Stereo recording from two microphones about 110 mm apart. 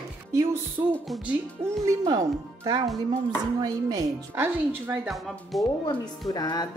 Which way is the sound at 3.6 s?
35° right (ahead or behind).